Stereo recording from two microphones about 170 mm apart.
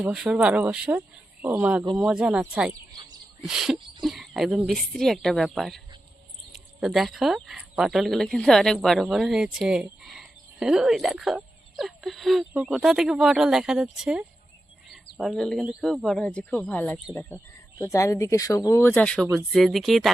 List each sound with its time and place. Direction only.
0.0 s speech: 5° right (ahead or behind)